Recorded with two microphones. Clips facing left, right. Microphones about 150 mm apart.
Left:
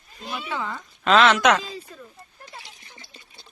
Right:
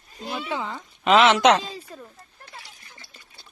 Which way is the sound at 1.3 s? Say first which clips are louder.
Right 2 dB; 30° right (ahead or behind).